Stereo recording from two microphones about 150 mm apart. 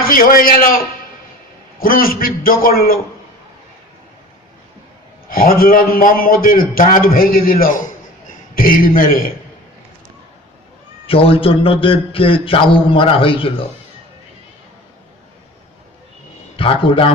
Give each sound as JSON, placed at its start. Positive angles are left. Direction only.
{"t": 0.0, "sound": "a man's voice", "side_deg": 70}
{"t": 1.8, "sound": "a man's voice", "side_deg": 75}
{"t": 5.3, "sound": "a man's voice", "side_deg": 75}
{"t": 8.3, "sound": "a sound", "side_deg": 70}
{"t": 9.0, "sound": "a man's voice", "side_deg": 70}
{"t": 11.0, "sound": "a man's voice", "side_deg": 40}
{"t": 16.6, "sound": "a man's voice", "side_deg": 35}